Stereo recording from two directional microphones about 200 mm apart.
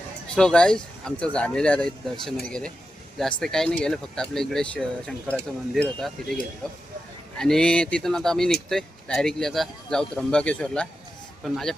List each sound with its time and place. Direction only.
0.3 s speech: 5° left (ahead or behind)
3.4 s speech: centre (ahead or behind)
7.3 s speech: 5° left (ahead or behind)